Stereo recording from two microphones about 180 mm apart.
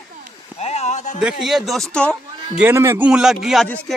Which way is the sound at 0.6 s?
35° left (ahead or behind).